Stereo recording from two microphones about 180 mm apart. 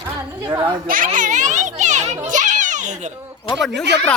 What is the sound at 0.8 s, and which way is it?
Speech, 50° right (ahead or behind).